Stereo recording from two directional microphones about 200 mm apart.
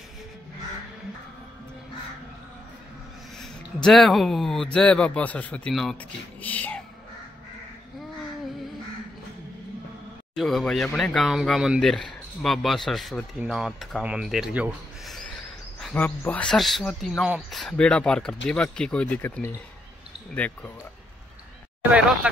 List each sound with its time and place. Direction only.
3.3 s speech: centre (ahead or behind)
6.4 s a sound: 5° left (ahead or behind)
10.3 s speech: centre (ahead or behind)
22.2 s speech: 5° right (ahead or behind)